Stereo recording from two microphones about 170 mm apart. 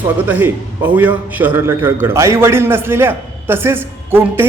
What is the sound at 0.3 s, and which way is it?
A man's voice, 10° right (ahead or behind).